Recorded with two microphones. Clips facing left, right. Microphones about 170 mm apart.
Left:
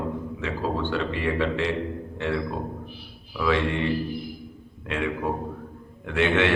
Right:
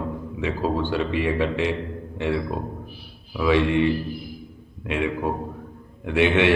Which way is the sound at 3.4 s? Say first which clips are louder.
Right 4 dB; 15° right (ahead or behind).